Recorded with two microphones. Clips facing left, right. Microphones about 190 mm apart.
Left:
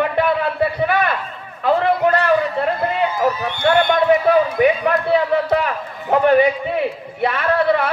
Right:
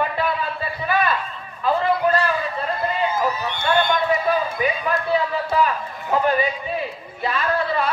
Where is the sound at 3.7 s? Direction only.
70° left (ahead or behind).